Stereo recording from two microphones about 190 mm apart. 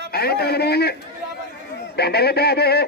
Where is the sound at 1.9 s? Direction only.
60° left (ahead or behind).